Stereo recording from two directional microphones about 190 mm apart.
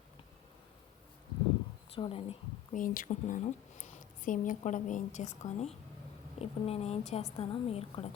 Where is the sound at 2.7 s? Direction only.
45° left (ahead or behind).